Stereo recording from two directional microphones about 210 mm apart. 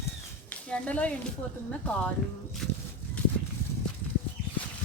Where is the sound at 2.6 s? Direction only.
5° left (ahead or behind).